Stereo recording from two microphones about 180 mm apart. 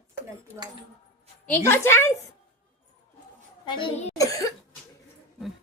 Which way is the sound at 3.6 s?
25° left (ahead or behind).